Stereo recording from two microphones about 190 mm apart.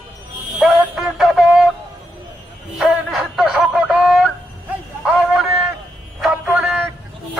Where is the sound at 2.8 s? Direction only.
Centre (ahead or behind).